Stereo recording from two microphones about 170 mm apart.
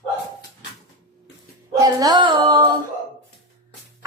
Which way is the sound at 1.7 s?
20° right (ahead or behind).